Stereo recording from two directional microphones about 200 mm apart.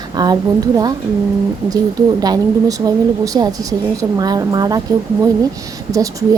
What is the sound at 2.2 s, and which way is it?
A woman's voice, 20° right (ahead or behind).